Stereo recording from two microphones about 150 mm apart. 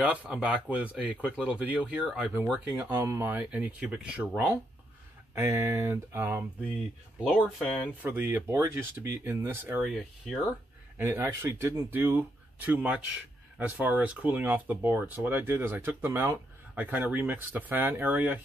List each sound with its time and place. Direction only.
0.0 s speech: 10° right (ahead or behind)
5.3 s speech: 15° right (ahead or behind)
7.2 s speech: centre (ahead or behind)
8.0 s speech: 15° right (ahead or behind)
9.8 s speech: centre (ahead or behind)
11.0 s speech: 15° right (ahead or behind)